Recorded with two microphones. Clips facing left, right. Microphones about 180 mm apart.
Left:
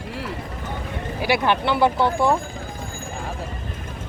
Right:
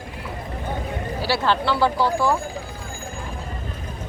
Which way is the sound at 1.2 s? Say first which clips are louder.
Left 2 dB; 20° left (ahead or behind).